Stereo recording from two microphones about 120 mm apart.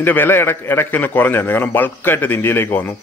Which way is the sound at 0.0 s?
15° left (ahead or behind).